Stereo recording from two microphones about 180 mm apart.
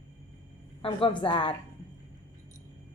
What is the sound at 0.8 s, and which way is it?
Speech, 30° left (ahead or behind).